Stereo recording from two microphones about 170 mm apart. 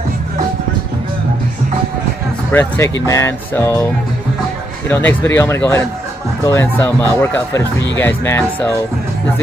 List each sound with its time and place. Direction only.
2.5 s speech: 10° left (ahead or behind)
4.8 s speech: 10° left (ahead or behind)